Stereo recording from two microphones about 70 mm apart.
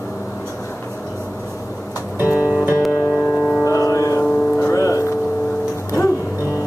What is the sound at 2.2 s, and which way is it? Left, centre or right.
Music, left.